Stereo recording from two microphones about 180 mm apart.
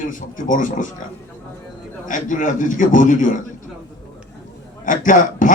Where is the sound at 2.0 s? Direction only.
45° left (ahead or behind).